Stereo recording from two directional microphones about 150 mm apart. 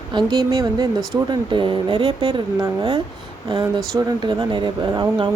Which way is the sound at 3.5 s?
30° right (ahead or behind).